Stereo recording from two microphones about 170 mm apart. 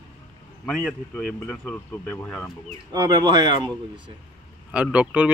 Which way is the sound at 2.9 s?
25° right (ahead or behind).